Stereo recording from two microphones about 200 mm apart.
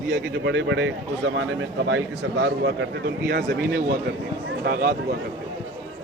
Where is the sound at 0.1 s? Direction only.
60° right (ahead or behind).